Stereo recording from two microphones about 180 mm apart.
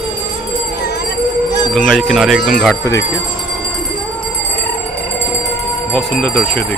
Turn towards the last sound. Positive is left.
turn(degrees=5)  # may be behind; listen again after turning